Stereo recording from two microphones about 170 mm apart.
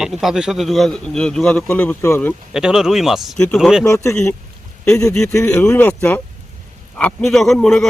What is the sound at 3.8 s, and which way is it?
Speech, 15° left (ahead or behind).